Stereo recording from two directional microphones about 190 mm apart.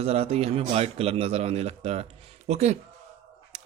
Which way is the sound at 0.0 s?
35° right (ahead or behind).